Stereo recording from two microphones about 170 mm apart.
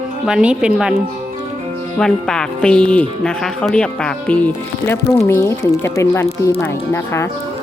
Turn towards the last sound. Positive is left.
turn(degrees=15)  # may be behind; listen again after turning